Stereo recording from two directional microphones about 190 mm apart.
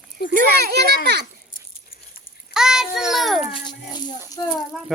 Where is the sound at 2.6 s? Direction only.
5° right (ahead or behind).